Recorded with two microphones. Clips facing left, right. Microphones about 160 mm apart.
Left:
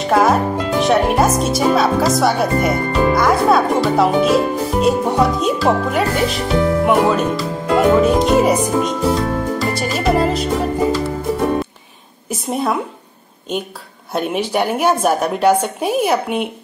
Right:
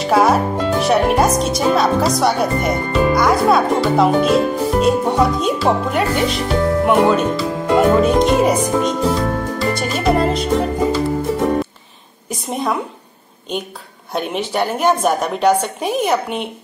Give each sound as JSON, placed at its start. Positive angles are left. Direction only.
{"t": 0.0, "sound": "speech", "side_deg": 0}
{"t": 12.3, "sound": "speech", "side_deg": 5}
{"t": 14.1, "sound": "a woman's voice", "side_deg": 5}